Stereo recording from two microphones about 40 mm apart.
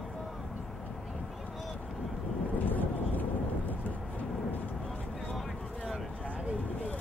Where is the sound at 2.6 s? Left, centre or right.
Left.